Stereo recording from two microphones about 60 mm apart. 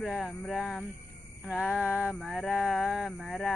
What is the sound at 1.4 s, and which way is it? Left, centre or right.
Speech, centre.